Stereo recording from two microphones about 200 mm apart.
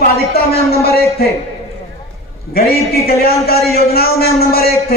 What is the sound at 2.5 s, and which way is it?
A man's voice, 50° left (ahead or behind).